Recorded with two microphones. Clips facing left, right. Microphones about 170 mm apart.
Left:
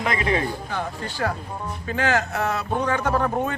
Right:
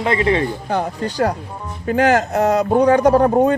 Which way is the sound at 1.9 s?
45° right (ahead or behind).